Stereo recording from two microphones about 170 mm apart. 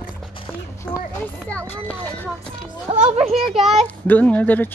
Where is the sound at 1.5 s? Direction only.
10° left (ahead or behind).